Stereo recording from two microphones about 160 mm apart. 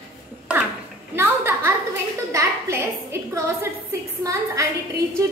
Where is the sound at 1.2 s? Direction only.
15° right (ahead or behind).